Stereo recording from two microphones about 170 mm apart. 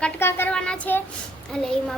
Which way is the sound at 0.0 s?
15° left (ahead or behind).